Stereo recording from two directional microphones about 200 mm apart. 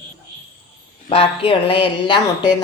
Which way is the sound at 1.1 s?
30° left (ahead or behind).